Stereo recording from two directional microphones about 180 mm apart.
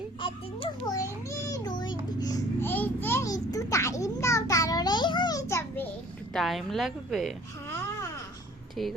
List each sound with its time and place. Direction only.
0.2 s a child's voice: 30° left (ahead or behind)
0.9 s a child's voice: 20° left (ahead or behind)
1.8 s a sound: 20° left (ahead or behind)
6.3 s a woman's voice: centre (ahead or behind)
8.7 s speech: centre (ahead or behind)